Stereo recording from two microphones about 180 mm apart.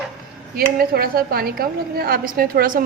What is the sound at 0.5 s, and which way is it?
Speech, 55° right (ahead or behind).